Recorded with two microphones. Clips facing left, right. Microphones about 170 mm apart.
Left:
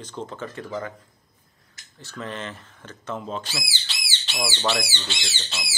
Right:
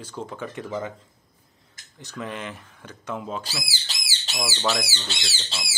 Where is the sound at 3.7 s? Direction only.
40° right (ahead or behind).